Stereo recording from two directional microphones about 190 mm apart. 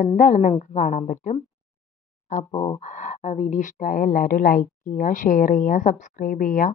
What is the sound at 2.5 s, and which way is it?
Speech, 15° left (ahead or behind).